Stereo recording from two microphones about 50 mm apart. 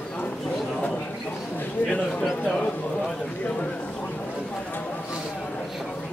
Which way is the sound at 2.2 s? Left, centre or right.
Centre.